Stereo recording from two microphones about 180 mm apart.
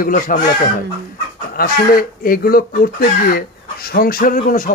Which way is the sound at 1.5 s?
55° left (ahead or behind).